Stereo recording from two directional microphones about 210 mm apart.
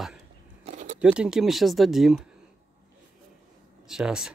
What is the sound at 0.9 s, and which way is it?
Speech, 5° right (ahead or behind).